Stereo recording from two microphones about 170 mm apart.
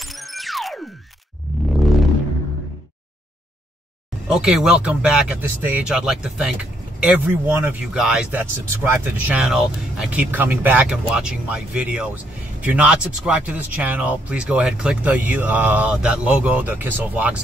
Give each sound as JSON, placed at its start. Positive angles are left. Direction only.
{"t": 0.0, "sound": "music", "side_deg": 0}
{"t": 1.7, "sound": "a sound", "side_deg": 0}
{"t": 4.3, "sound": "speech", "side_deg": -5}